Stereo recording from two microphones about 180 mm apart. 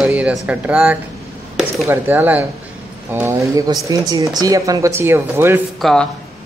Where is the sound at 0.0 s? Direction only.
5° right (ahead or behind).